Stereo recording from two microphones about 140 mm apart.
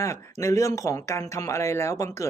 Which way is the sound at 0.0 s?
20° left (ahead or behind).